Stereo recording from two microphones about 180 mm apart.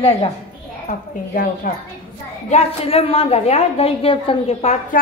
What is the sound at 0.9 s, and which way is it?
Speech, 50° left (ahead or behind).